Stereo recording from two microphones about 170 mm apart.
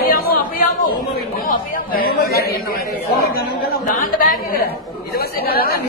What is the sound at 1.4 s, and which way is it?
Speech, 55° left (ahead or behind).